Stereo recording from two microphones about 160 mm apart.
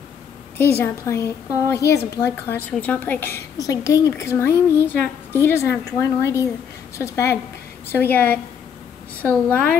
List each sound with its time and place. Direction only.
0.6 s a woman's voice: 15° left (ahead or behind)